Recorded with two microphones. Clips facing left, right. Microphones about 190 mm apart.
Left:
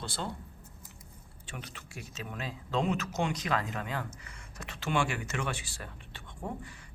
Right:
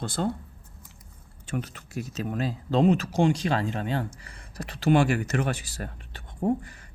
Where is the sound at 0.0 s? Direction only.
45° right (ahead or behind).